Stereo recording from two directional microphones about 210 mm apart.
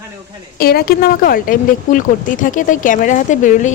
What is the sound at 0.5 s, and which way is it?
A woman's voice, 45° left (ahead or behind).